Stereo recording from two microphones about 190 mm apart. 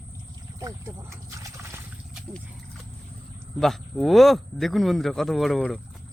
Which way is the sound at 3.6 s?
Centre (ahead or behind).